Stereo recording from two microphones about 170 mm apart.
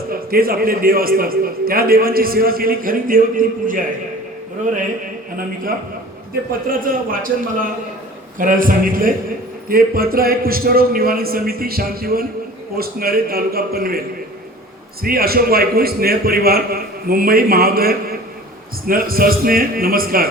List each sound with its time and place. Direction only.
0.1 s a man's voice: 60° right (ahead or behind)
6.7 s a man's voice: 55° right (ahead or behind)
15.0 s a man's voice: 60° right (ahead or behind)